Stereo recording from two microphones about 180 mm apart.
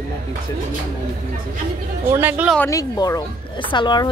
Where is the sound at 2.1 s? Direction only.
10° right (ahead or behind).